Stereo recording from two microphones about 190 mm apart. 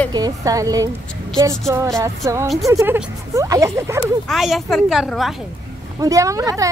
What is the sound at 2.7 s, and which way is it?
A woman's voice, 15° right (ahead or behind).